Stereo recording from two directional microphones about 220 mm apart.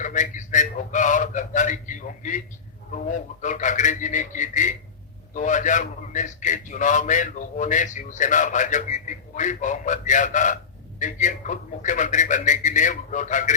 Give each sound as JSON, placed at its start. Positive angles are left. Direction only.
{"t": 0.0, "sound": "a man's voice", "side_deg": 35}
{"t": 3.4, "sound": "a man's voice", "side_deg": 35}